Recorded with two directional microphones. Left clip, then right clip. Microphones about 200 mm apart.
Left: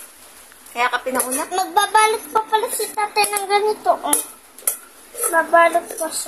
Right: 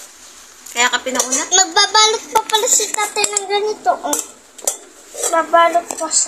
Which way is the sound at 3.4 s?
15° left (ahead or behind).